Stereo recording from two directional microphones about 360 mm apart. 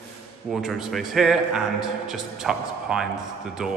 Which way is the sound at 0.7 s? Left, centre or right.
Centre.